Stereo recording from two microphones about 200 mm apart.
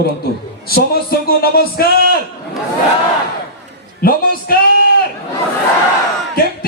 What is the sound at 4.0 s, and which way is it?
Speech, 45° left (ahead or behind).